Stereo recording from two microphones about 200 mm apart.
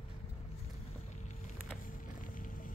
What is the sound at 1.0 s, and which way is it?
Vehicle, 35° left (ahead or behind).